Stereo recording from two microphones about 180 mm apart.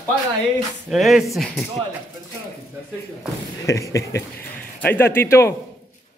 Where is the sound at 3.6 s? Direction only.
15° left (ahead or behind).